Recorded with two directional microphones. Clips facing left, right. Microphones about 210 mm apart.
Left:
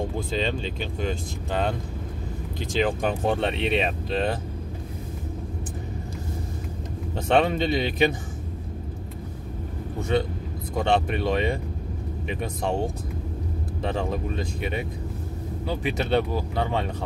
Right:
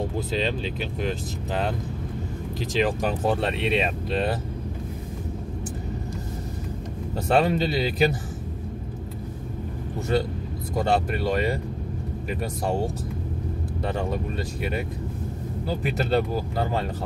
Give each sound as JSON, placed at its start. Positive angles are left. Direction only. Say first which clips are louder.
{"t": 0.3, "sound": "speech", "louder": "right 1 dB", "side_deg": -5}
{"t": 7.2, "sound": "speech", "louder": "even", "side_deg": 0}
{"t": 9.9, "sound": "speech", "louder": "even", "side_deg": 0}